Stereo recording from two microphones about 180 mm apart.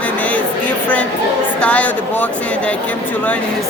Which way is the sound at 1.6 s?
10° left (ahead or behind).